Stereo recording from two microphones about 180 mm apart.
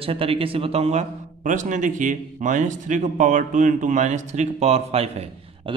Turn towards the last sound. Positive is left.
turn(degrees=-35)  # may be behind; listen again after turning